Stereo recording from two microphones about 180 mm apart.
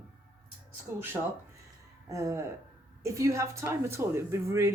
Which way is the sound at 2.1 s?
15° right (ahead or behind).